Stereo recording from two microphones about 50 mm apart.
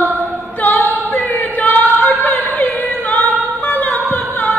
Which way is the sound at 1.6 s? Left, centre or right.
Left.